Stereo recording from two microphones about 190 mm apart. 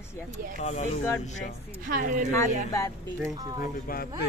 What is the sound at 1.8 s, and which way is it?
Speech, 45° right (ahead or behind).